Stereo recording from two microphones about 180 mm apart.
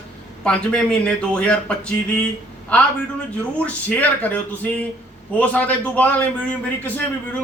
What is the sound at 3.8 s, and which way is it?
Speech, 10° left (ahead or behind).